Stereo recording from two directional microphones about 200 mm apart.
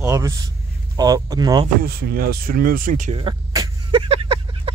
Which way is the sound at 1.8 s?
50° right (ahead or behind).